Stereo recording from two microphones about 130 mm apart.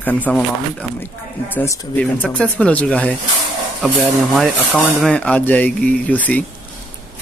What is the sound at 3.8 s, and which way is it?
A man's voice, centre (ahead or behind).